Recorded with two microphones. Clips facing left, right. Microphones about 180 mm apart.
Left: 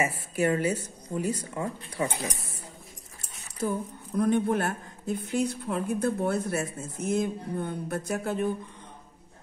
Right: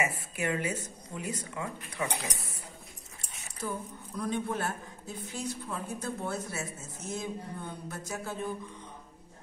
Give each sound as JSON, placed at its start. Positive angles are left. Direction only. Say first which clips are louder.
{"t": 0.0, "sound": "speech", "louder": "left 6 dB", "side_deg": 35}
{"t": 3.6, "sound": "speech", "louder": "left 7 dB", "side_deg": 50}